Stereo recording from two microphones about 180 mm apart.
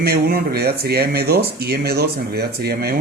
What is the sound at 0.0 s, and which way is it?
A man's voice, 60° right (ahead or behind).